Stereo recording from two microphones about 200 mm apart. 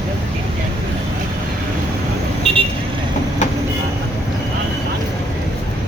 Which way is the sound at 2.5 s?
30° right (ahead or behind).